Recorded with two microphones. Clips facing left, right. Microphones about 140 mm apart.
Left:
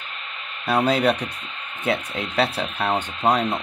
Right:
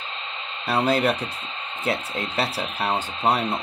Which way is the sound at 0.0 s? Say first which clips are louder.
Right 3 dB; 25° right (ahead or behind).